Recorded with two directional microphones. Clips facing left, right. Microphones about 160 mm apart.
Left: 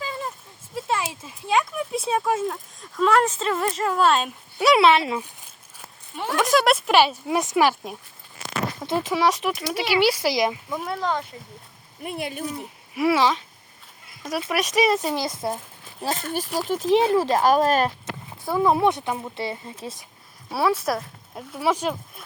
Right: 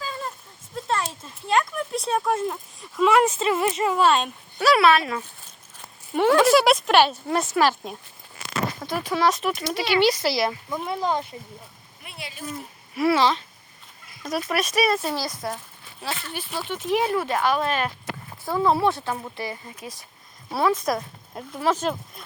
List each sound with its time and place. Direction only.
0.0 s speech: 10° left (ahead or behind)
4.6 s speech: 20° left (ahead or behind)
6.4 s speech: 5° right (ahead or behind)
6.7 s speech: 5° left (ahead or behind)
8.9 s speech: 25° left (ahead or behind)
9.1 s speech: 10° left (ahead or behind)
10.7 s speech: centre (ahead or behind)
11.1 s speech: 20° right (ahead or behind)
12.0 s speech: 50° left (ahead or behind)
12.9 s speech: 10° left (ahead or behind)
16.0 s speech: 40° left (ahead or behind)
18.0 s speech: 15° left (ahead or behind)
19.4 s speech: 25° left (ahead or behind)
20.5 s speech: 5° left (ahead or behind)